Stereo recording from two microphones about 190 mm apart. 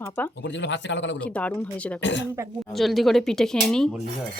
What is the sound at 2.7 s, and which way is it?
A woman's voice, centre (ahead or behind).